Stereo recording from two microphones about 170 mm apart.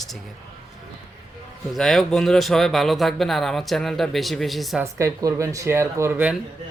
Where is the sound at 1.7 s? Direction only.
Centre (ahead or behind).